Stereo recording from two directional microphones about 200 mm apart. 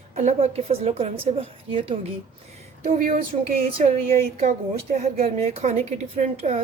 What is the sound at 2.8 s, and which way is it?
Speech, 45° right (ahead or behind).